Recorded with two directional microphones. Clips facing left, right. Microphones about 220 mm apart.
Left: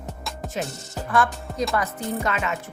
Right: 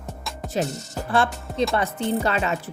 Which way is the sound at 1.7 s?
30° right (ahead or behind).